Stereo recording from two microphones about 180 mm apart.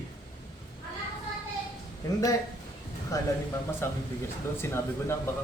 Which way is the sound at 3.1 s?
15° left (ahead or behind).